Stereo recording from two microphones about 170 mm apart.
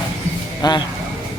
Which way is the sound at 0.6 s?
25° left (ahead or behind).